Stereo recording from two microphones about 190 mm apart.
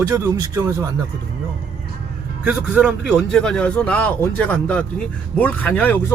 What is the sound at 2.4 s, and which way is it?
A man's voice, 10° right (ahead or behind).